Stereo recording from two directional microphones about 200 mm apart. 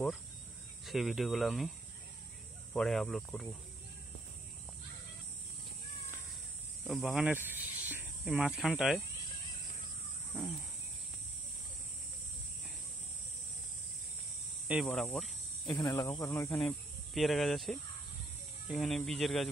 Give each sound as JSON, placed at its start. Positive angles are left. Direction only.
{"t": 0.8, "sound": "speech", "side_deg": 0}
{"t": 2.7, "sound": "speech", "side_deg": 0}
{"t": 6.8, "sound": "speech", "side_deg": 0}
{"t": 10.3, "sound": "speech", "side_deg": 0}
{"t": 14.7, "sound": "speech", "side_deg": -5}
{"t": 15.1, "sound": "cricket", "side_deg": 0}
{"t": 15.7, "sound": "speech", "side_deg": 15}